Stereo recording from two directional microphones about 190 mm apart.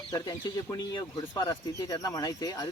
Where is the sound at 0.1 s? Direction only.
20° left (ahead or behind).